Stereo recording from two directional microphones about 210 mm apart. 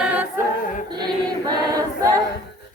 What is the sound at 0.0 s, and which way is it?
A capella, 5° right (ahead or behind).